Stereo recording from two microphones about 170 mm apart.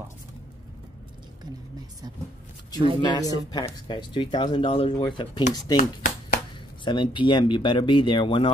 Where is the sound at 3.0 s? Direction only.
25° left (ahead or behind).